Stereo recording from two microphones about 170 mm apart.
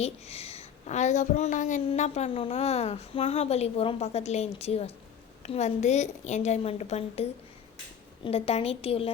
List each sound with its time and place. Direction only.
0.0 s a woman's voice: 40° left (ahead or behind)